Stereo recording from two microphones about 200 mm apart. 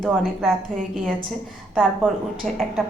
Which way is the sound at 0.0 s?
Centre (ahead or behind).